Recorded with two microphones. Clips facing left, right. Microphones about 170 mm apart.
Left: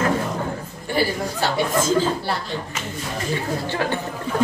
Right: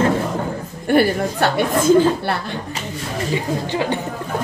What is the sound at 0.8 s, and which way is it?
A woman's voice, 60° right (ahead or behind).